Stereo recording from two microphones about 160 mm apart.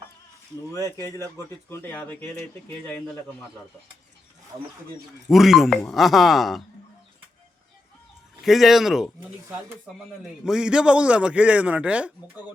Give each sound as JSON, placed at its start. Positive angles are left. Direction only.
{"t": 0.7, "sound": "speech", "side_deg": 20}
{"t": 5.3, "sound": "speech", "side_deg": 0}
{"t": 8.4, "sound": "speech", "side_deg": 0}
{"t": 10.4, "sound": "a man's voice", "side_deg": -5}